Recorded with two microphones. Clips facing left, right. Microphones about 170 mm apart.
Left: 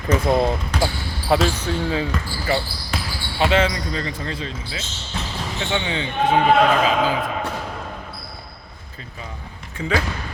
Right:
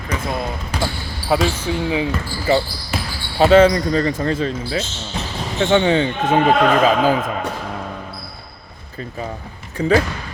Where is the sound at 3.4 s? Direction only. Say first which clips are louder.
Right 8 dB; 40° right (ahead or behind).